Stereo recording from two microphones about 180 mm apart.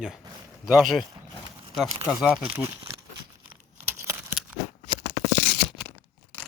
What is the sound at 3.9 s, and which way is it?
Scissors, 15° right (ahead or behind).